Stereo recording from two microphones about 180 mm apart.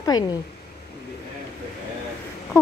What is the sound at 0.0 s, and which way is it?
Speech, 20° left (ahead or behind).